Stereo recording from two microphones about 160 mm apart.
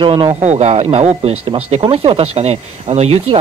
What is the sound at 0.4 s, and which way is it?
Speech, 45° right (ahead or behind).